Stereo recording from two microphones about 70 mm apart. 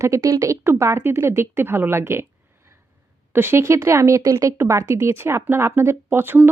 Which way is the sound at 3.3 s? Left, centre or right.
Right.